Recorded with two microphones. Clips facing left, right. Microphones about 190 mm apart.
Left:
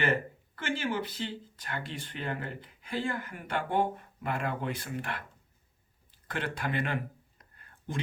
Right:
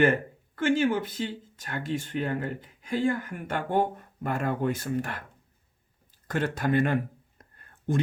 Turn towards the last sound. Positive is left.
turn(degrees=-45)  # may be behind; listen again after turning